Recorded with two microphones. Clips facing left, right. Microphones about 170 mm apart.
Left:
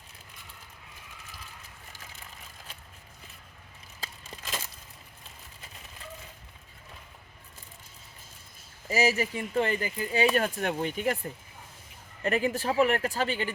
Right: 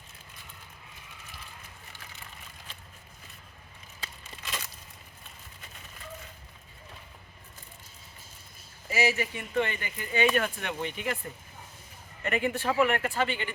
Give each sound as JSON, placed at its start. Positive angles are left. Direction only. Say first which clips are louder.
{"t": 4.0, "sound": "crushing", "louder": "left 1 dB", "side_deg": 40}
{"t": 8.9, "sound": "speech", "louder": "left 2 dB", "side_deg": 40}
{"t": 12.2, "sound": "speech", "louder": "left 1 dB", "side_deg": 35}